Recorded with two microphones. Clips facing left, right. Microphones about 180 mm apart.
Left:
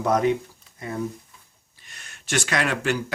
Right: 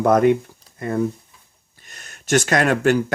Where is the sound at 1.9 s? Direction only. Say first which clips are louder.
Right 9 dB; 40° right (ahead or behind).